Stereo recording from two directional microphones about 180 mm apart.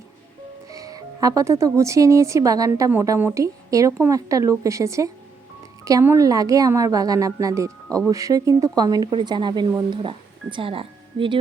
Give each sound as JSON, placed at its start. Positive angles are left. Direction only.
{"t": 0.7, "sound": "speech", "side_deg": -20}